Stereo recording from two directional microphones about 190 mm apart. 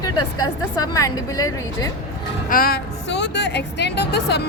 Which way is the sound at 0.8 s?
20° left (ahead or behind).